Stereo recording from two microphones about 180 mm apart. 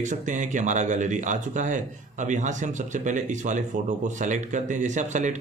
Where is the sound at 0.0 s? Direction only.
45° right (ahead or behind).